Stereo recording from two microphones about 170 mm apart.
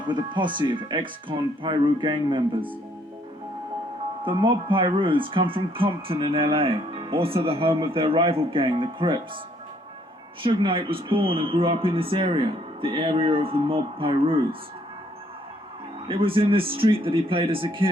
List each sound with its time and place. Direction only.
0.1 s speech: 25° right (ahead or behind)
4.2 s speech: 30° right (ahead or behind)
10.4 s speech: 30° right (ahead or behind)
16.0 s speech: 30° right (ahead or behind)